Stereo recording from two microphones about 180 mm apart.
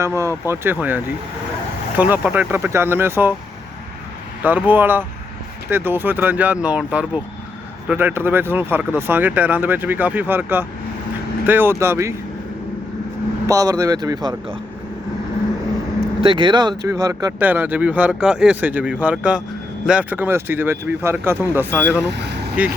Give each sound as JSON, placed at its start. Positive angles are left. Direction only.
{"t": 0.0, "sound": "speech", "side_deg": -15}
{"t": 4.4, "sound": "speech", "side_deg": -10}
{"t": 13.5, "sound": "speech", "side_deg": -20}
{"t": 16.2, "sound": "speech", "side_deg": -30}
{"t": 22.0, "sound": "speech", "side_deg": -70}
{"t": 22.6, "sound": "speech", "side_deg": -10}